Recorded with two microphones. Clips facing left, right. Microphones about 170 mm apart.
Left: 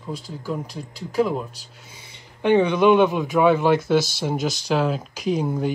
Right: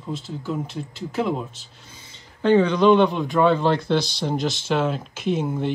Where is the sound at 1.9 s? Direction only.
15° left (ahead or behind).